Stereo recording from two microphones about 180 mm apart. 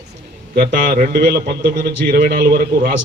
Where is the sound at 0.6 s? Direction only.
55° right (ahead or behind).